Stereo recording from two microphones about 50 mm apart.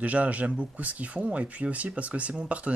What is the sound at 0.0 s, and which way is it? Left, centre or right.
Speech, right.